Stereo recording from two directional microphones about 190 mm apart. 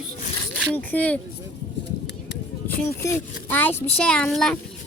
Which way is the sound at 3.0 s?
15° left (ahead or behind).